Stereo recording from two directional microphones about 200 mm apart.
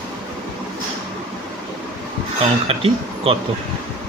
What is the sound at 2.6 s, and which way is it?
Speech, 30° right (ahead or behind).